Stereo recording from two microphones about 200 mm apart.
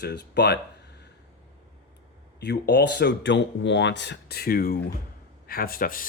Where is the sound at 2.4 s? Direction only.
60° left (ahead or behind).